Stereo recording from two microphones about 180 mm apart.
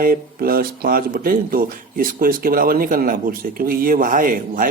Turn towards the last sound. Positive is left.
turn(degrees=-50)  # may be behind; listen again after turning